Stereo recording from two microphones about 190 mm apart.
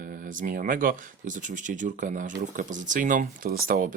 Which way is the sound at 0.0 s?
45° right (ahead or behind).